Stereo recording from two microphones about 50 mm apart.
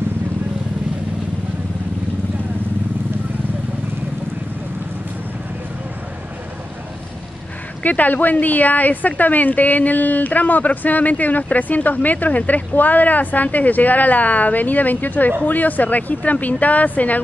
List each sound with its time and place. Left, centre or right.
7.8 s a woman's voice: left